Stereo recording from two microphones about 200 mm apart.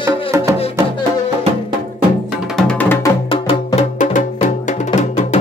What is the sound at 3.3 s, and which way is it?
Music, 25° left (ahead or behind).